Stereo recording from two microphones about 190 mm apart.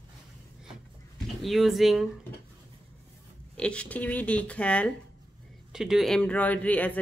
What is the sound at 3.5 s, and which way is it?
Speech, 5° left (ahead or behind).